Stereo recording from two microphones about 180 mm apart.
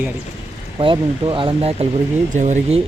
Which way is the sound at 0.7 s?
30° right (ahead or behind).